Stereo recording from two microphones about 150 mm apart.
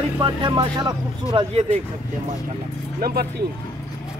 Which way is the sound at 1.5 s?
45° right (ahead or behind).